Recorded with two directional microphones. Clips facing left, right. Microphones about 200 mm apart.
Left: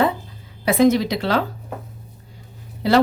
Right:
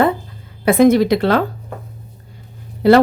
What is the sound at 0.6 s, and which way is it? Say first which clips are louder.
Speech: right 5 dB; 55° right (ahead or behind).